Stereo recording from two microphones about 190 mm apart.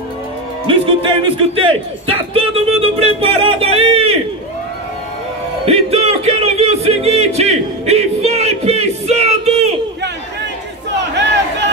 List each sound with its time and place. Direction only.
0.7 s speech: 25° right (ahead or behind)
5.7 s music: 30° right (ahead or behind)